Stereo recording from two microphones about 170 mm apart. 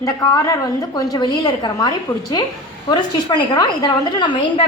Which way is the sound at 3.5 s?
25° left (ahead or behind).